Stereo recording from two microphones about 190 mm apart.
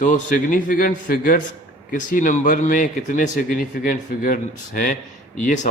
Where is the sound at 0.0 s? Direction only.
45° left (ahead or behind).